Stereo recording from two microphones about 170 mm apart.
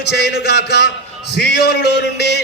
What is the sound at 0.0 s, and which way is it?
A man's voice, 75° left (ahead or behind).